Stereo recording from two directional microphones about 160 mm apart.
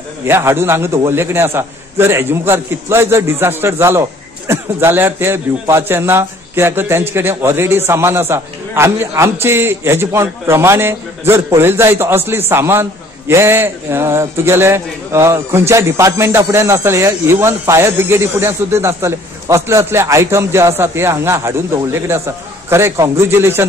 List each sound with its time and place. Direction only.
0.2 s a man's voice: 15° right (ahead or behind)